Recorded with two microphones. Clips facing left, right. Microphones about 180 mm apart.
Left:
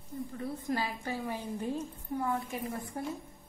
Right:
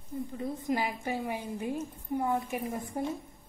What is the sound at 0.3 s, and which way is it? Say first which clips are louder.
A woman's voice: right 3 dB; 15° right (ahead or behind).